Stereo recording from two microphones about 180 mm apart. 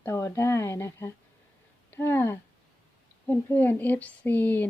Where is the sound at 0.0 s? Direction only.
15° left (ahead or behind).